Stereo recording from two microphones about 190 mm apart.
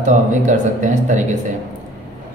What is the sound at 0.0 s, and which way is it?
A man's voice, 40° right (ahead or behind).